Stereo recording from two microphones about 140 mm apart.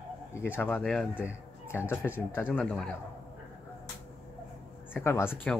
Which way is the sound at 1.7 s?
15° left (ahead or behind).